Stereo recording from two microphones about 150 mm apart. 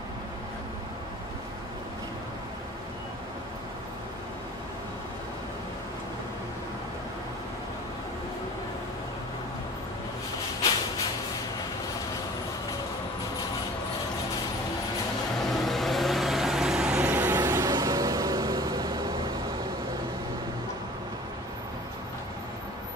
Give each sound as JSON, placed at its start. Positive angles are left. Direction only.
{"t": 15.3, "sound": "vehicle", "side_deg": 0}
{"t": 17.4, "sound": "vehicle", "side_deg": -20}